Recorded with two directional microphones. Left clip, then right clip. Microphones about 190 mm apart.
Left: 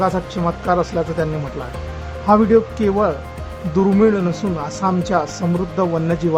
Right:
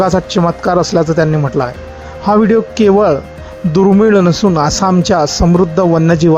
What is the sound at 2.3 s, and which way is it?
Speech, 40° right (ahead or behind).